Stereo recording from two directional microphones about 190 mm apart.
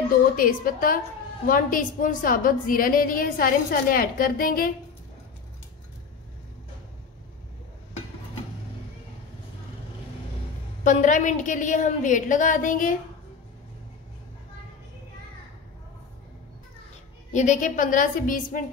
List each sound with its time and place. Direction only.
0.4 s a woman's voice: 45° left (ahead or behind)
10.8 s a woman's voice: 40° left (ahead or behind)
17.3 s a woman's voice: 40° left (ahead or behind)